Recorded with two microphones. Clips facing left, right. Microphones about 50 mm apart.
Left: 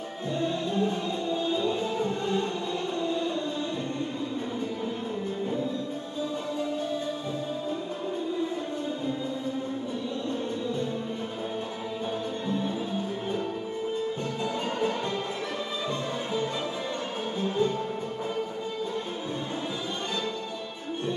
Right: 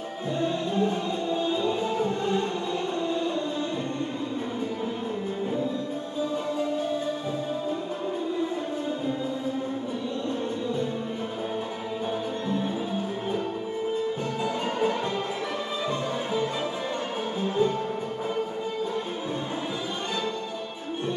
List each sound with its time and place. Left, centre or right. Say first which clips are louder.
0.4 s music: right 2 dB; centre
14.4 s music: right 2 dB; centre
17.4 s music: right 2 dB; centre